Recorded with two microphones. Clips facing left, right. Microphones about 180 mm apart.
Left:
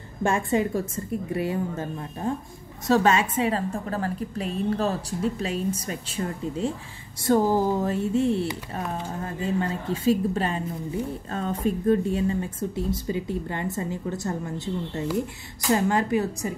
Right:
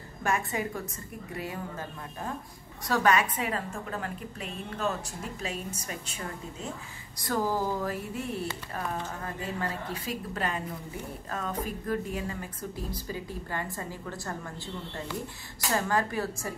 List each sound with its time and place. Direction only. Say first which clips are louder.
0.5 s a woman's voice: left 9 dB; 25° left (ahead or behind)
15.7 s speech: left 7 dB; 20° left (ahead or behind)